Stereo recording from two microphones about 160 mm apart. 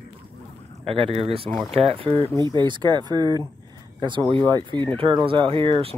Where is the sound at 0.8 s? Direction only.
35° right (ahead or behind).